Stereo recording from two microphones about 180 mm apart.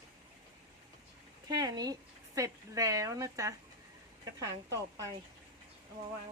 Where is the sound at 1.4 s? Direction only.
20° right (ahead or behind).